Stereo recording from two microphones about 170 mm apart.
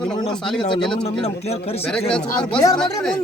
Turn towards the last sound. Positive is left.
turn(degrees=5)  # may be behind; listen again after turning